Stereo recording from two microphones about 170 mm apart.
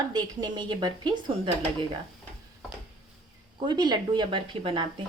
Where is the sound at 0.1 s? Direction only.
25° right (ahead or behind).